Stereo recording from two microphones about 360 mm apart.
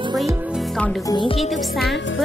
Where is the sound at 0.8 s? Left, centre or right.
Centre.